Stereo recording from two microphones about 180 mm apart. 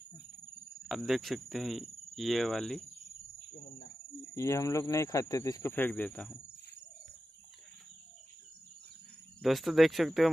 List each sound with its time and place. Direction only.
0.8 s speech: centre (ahead or behind)
3.5 s cricket: 60° left (ahead or behind)
4.4 s speech: 15° left (ahead or behind)
9.4 s speech: centre (ahead or behind)